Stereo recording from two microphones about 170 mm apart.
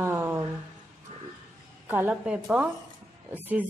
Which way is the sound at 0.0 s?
15° right (ahead or behind).